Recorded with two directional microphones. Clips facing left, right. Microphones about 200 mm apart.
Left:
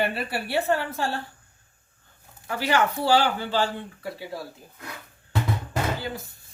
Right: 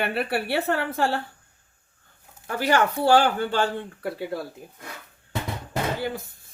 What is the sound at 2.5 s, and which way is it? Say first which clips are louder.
Speech: right 2 dB; 45° right (ahead or behind).